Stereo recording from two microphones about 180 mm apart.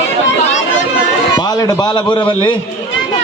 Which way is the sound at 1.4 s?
20° left (ahead or behind).